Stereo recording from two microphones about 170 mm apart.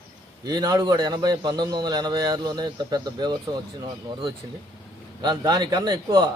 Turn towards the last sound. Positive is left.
turn(degrees=-25)  # may be behind; listen again after turning